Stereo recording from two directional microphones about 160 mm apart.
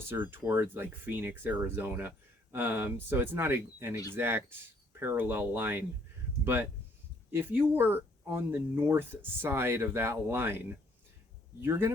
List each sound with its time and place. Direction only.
0.1 s speech: 15° right (ahead or behind)
11.6 s speech: 15° right (ahead or behind)